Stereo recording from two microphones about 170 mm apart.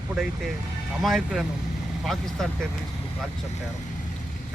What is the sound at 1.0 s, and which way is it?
Speech, centre (ahead or behind).